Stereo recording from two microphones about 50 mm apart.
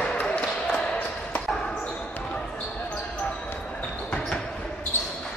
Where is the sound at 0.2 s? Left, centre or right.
Left.